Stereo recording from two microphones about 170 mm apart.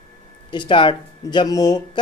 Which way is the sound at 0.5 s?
30° left (ahead or behind).